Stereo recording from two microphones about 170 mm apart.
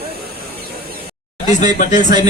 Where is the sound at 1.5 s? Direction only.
45° left (ahead or behind).